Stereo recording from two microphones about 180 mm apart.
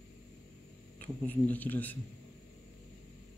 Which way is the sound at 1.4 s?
10° left (ahead or behind).